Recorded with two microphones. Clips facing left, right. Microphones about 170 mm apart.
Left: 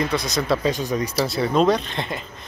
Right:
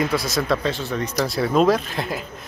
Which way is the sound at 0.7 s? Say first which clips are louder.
Left 2 dB; 15° left (ahead or behind).